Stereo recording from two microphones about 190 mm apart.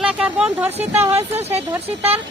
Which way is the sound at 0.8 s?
10° right (ahead or behind).